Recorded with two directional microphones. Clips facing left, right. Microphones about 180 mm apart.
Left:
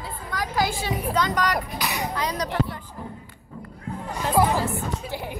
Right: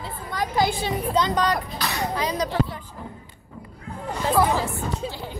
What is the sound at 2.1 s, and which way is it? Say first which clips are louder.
Speech: right 2 dB; 25° right (ahead or behind).